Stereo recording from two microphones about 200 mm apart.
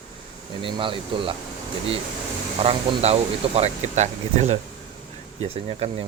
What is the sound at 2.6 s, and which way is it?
Speech, 30° right (ahead or behind).